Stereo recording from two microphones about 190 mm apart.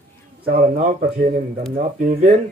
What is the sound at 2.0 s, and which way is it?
Speech, 40° right (ahead or behind).